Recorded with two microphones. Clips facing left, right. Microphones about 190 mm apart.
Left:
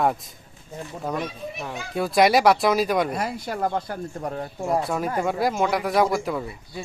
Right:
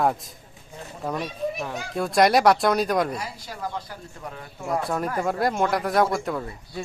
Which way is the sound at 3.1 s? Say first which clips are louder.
Left 6 dB; 55° left (ahead or behind).